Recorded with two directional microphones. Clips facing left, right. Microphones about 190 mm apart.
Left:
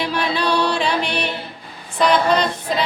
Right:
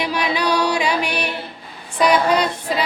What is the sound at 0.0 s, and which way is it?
Music, 15° right (ahead or behind).